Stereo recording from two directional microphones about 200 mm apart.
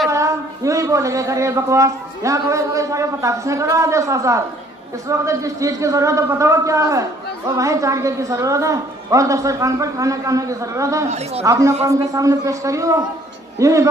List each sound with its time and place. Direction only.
0.1 s a man's voice: 15° right (ahead or behind)